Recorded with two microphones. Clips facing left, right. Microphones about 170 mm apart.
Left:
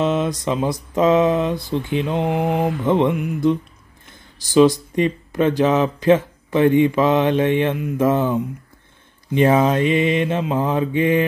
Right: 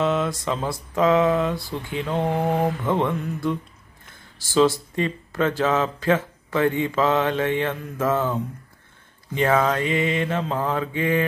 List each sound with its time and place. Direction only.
0.0 s speech: 20° left (ahead or behind)